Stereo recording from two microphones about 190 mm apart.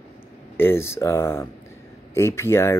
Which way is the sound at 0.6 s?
10° left (ahead or behind).